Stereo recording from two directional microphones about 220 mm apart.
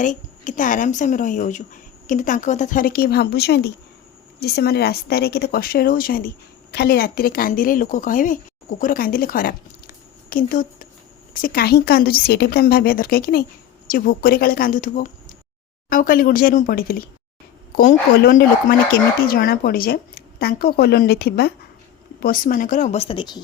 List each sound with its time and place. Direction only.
0.0 s a woman's voice: 35° left (ahead or behind)
17.7 s a sound: 40° left (ahead or behind)
18.9 s a woman's voice: 40° left (ahead or behind); by 23.4 s 20° left (ahead or behind)